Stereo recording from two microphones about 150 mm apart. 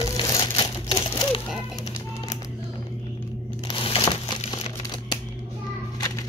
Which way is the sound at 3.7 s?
35° left (ahead or behind).